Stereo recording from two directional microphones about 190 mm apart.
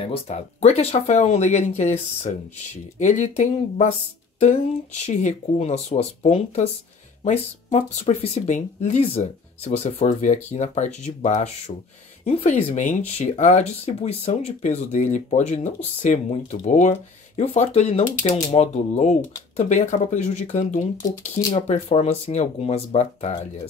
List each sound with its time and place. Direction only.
0.0 s speech: 30° left (ahead or behind)
21.1 s speech: 15° left (ahead or behind)
21.5 s speech: 40° left (ahead or behind)